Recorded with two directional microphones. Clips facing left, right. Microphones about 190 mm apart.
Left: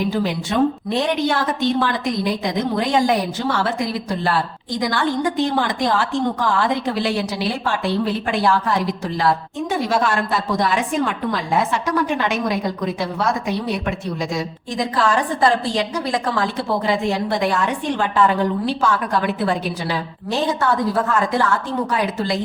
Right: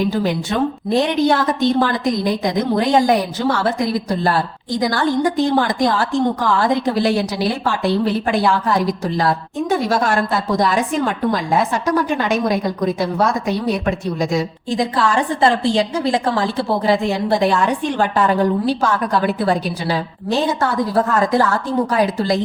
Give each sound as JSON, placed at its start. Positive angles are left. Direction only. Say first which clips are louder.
{"t": 0.9, "sound": "a woman's voice", "louder": "right 4 dB", "side_deg": -40}
{"t": 9.6, "sound": "a woman's voice", "louder": "right 2 dB", "side_deg": -40}
{"t": 15.4, "sound": "a woman's voice", "louder": "right 3 dB", "side_deg": -25}